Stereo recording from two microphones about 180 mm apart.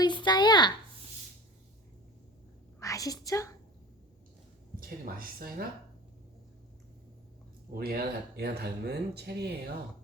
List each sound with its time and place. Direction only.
0.0 s a sound: 25° left (ahead or behind)
2.8 s a woman's voice: 20° left (ahead or behind)
4.8 s speech: 55° right (ahead or behind)
7.7 s speech: 60° right (ahead or behind)